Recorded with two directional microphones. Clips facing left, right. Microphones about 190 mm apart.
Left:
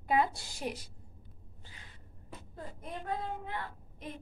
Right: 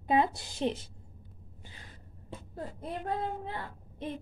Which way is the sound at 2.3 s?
30° right (ahead or behind).